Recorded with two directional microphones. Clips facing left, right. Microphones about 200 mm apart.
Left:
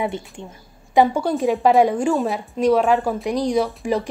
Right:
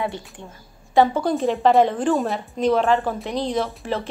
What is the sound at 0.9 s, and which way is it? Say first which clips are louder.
A woman's voice: left 1 dB; 15° left (ahead or behind).